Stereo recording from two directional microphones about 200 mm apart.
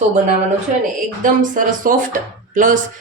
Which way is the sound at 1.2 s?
40° right (ahead or behind).